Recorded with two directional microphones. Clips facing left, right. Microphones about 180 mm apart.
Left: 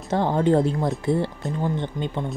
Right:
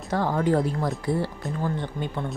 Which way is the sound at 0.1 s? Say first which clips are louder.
Left 3 dB; 25° left (ahead or behind).